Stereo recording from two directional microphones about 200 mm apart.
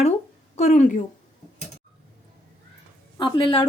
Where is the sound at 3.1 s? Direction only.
25° left (ahead or behind).